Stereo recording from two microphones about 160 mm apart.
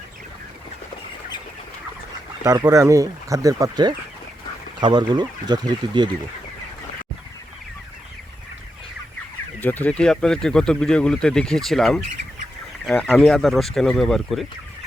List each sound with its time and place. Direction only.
2.4 s speech: 20° right (ahead or behind)
9.6 s speech: 10° left (ahead or behind)